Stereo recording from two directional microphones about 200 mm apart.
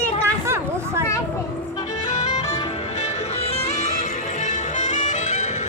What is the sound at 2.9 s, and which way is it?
Music, 35° left (ahead or behind).